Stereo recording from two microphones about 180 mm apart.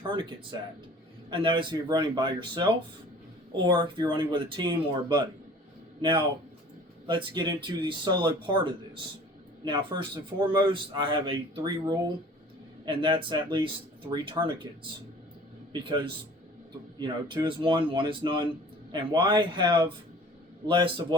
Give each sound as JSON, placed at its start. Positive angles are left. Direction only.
{"t": 0.1, "sound": "a man's voice", "side_deg": -30}
{"t": 15.7, "sound": "a man's voice", "side_deg": -30}